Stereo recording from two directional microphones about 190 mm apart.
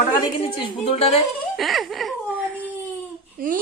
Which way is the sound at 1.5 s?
Centre (ahead or behind).